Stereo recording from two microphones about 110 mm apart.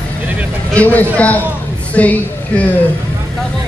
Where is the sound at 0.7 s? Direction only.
15° left (ahead or behind).